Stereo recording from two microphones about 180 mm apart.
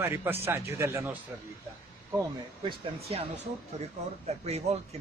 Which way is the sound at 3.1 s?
35° right (ahead or behind).